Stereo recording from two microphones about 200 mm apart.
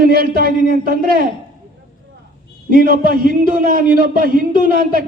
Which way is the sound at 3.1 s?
45° right (ahead or behind).